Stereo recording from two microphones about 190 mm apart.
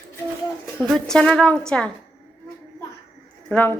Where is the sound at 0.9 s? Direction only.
5° left (ahead or behind).